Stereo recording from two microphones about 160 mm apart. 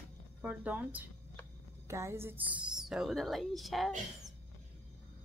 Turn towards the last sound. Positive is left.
turn(degrees=0)  # may be behind; listen again after turning